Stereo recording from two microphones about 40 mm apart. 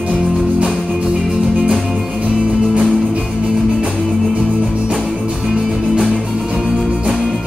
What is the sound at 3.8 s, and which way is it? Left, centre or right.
Music, centre.